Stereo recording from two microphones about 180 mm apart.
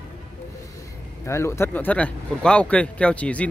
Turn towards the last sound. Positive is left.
turn(degrees=5)  # may be behind; listen again after turning